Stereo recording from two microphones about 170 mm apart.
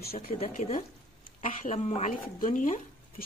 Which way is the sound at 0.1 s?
35° left (ahead or behind).